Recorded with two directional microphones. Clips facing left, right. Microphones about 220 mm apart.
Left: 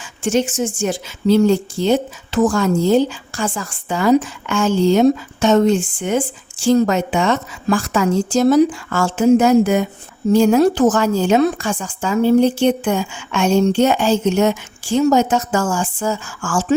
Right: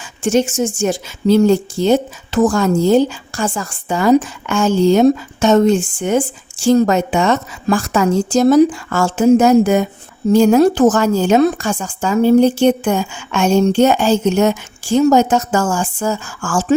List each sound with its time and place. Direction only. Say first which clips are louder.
0.2 s speech: right 3 dB; 45° right (ahead or behind)